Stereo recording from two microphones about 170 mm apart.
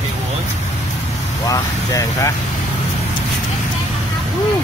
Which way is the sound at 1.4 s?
20° left (ahead or behind).